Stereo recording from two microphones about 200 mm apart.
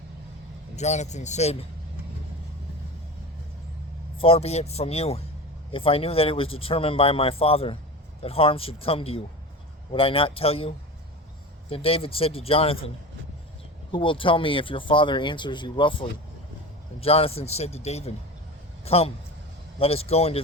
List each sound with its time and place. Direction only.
0.8 s speech: 35° left (ahead or behind)
4.2 s speech: 30° left (ahead or behind)
13.9 s speech: 25° left (ahead or behind)